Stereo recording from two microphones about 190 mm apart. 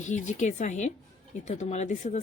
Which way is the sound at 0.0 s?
40° left (ahead or behind).